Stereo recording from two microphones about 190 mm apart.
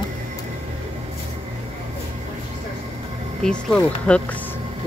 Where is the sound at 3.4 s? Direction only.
5° left (ahead or behind).